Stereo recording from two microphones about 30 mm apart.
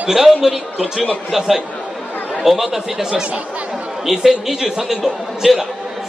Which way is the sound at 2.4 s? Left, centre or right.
Centre.